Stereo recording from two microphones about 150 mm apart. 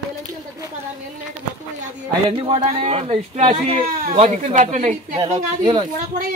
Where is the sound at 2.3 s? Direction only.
40° right (ahead or behind).